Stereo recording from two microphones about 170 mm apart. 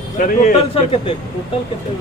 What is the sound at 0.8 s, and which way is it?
Speech, 35° left (ahead or behind).